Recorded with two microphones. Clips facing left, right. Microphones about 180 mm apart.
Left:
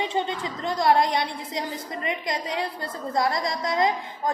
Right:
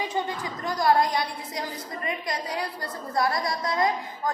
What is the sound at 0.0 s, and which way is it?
A woman's voice, 25° left (ahead or behind).